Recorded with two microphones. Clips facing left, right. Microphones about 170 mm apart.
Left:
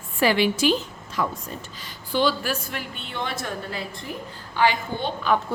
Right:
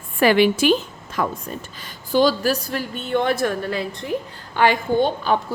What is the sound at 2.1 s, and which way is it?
A woman's voice, 40° right (ahead or behind).